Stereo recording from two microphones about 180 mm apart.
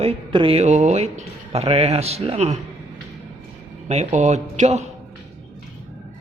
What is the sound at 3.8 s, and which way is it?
Speech, 40° right (ahead or behind).